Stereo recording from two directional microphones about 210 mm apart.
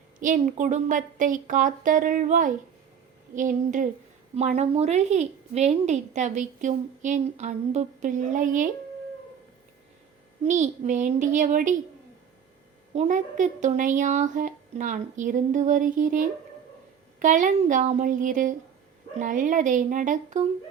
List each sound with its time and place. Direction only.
0.2 s a woman's voice: 35° right (ahead or behind)
10.4 s a woman's voice: 35° right (ahead or behind)
12.9 s a woman's voice: 35° right (ahead or behind)